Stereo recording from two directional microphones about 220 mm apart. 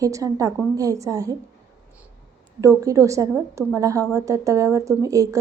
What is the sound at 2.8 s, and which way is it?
A woman's voice, 15° right (ahead or behind).